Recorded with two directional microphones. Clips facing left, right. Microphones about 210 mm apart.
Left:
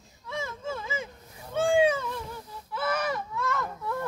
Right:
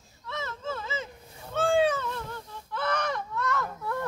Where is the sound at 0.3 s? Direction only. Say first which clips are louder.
Left 1 dB; 10° left (ahead or behind).